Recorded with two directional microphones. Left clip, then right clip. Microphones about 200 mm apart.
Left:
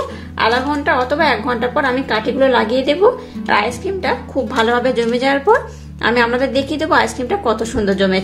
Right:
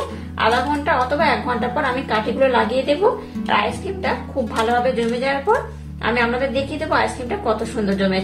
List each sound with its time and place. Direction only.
0.4 s a woman's voice: 35° left (ahead or behind)
4.6 s a woman's voice: 45° left (ahead or behind)